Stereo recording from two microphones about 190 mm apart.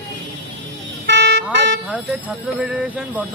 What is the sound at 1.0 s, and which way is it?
Vehicle, 65° right (ahead or behind).